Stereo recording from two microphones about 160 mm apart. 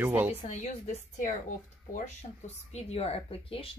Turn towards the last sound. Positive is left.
turn(degrees=35)  # may be behind; listen again after turning